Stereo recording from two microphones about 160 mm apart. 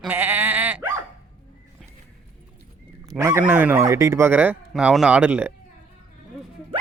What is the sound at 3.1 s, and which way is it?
Speech, 20° right (ahead or behind).